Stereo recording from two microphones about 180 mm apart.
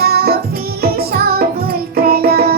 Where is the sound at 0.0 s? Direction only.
60° right (ahead or behind).